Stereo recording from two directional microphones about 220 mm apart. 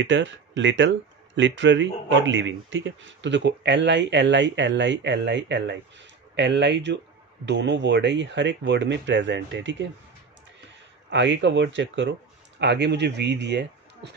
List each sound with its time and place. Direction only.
0.0 s speech: 55° right (ahead or behind)
11.1 s speech: 55° right (ahead or behind)